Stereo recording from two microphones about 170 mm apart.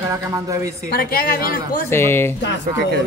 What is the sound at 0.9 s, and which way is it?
Speech, 60° left (ahead or behind).